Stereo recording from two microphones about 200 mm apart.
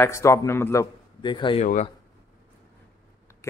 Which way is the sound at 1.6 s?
35° left (ahead or behind).